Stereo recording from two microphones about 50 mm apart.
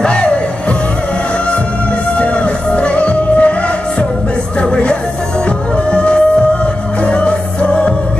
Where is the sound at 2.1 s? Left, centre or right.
Left.